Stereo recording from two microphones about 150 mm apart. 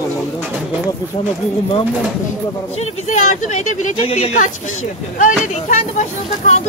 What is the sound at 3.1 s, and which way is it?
Speech, 55° left (ahead or behind).